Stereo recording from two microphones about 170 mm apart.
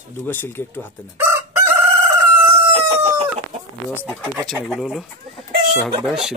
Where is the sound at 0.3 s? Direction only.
15° left (ahead or behind).